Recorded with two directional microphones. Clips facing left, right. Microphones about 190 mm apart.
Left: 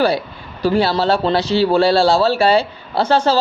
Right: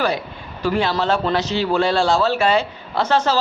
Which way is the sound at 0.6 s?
35° left (ahead or behind).